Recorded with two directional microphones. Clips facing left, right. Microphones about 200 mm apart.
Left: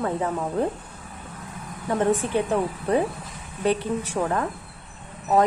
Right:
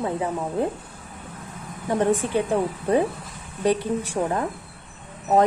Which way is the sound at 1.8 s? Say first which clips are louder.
Right 1 dB; 20° right (ahead or behind).